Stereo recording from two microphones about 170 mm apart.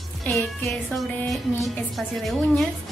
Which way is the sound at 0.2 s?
Centre (ahead or behind).